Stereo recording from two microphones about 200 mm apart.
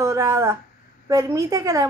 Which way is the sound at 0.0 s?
15° right (ahead or behind).